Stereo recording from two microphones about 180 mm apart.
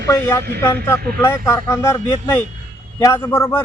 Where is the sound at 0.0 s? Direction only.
15° left (ahead or behind).